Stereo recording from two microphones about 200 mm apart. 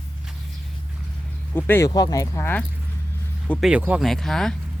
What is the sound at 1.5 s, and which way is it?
Speech, 10° left (ahead or behind).